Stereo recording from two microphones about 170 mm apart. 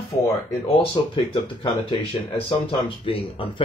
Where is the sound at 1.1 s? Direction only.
30° left (ahead or behind).